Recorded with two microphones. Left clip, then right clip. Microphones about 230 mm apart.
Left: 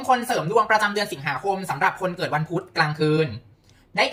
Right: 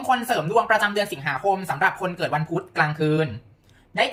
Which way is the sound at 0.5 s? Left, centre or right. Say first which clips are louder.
Left 1 dB; centre.